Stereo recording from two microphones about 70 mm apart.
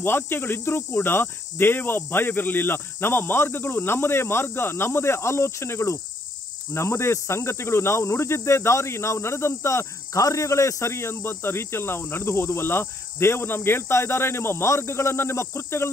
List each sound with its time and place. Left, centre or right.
0.0 s speech: left